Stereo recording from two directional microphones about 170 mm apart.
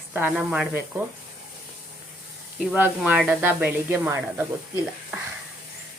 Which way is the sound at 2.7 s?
10° right (ahead or behind).